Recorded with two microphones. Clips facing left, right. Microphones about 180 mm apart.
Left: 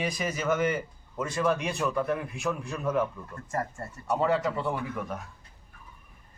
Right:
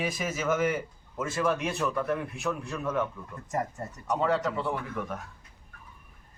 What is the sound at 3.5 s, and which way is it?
Speech, 20° right (ahead or behind).